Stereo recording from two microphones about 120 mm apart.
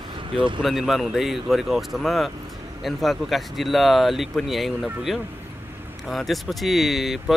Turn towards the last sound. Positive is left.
turn(degrees=0)  # may be behind; listen again after turning